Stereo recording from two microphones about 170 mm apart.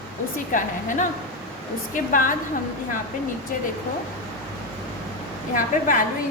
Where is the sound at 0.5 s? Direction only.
50° left (ahead or behind).